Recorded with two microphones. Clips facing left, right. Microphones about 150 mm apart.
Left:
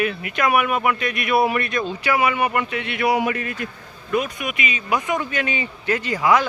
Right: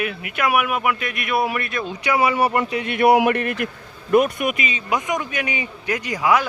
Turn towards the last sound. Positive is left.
turn(degrees=-10)  # may be behind; listen again after turning